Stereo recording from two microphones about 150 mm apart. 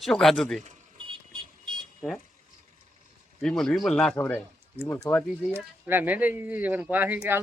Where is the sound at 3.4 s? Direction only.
5° left (ahead or behind).